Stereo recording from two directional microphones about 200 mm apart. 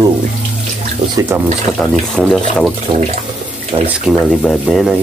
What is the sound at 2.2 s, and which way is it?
Speech, centre (ahead or behind).